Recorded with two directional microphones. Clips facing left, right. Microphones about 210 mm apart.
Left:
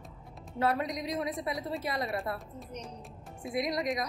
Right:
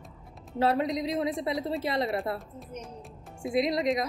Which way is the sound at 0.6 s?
25° right (ahead or behind).